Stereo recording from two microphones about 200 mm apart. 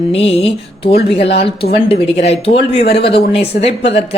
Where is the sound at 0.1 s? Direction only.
30° left (ahead or behind).